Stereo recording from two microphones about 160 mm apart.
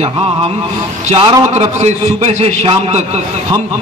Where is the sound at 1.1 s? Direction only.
30° right (ahead or behind).